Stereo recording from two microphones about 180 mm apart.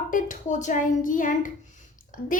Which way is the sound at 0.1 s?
45° left (ahead or behind).